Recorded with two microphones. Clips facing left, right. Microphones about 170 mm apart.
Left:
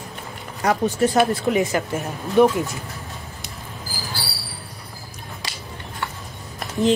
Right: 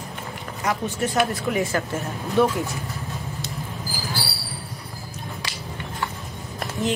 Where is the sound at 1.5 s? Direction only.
20° left (ahead or behind).